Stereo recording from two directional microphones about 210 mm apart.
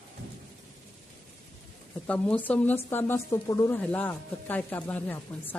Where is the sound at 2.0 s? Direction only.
5° left (ahead or behind).